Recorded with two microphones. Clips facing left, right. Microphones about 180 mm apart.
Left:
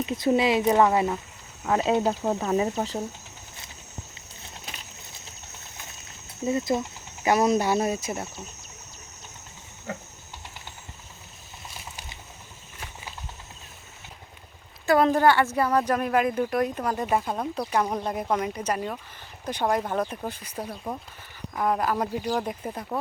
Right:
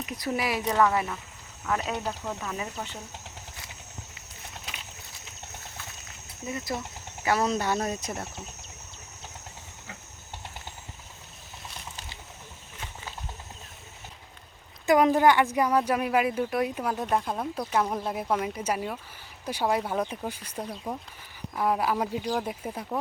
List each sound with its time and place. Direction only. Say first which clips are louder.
0.0 s speech: left 8 dB; 25° left (ahead or behind)
6.4 s speech: left 8 dB; 25° left (ahead or behind)
7.3 s speech: left 4 dB; 15° left (ahead or behind)
9.9 s a sound: left 12 dB; 45° left (ahead or behind)
14.8 s speech: even; 15° right (ahead or behind)
20.4 s speech: left 1 dB; 10° left (ahead or behind)
21.5 s speech: left 1 dB; 5° right (ahead or behind)